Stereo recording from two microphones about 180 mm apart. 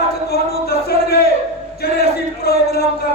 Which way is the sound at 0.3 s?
60° left (ahead or behind).